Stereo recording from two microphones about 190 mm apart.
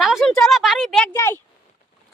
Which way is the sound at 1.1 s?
15° left (ahead or behind).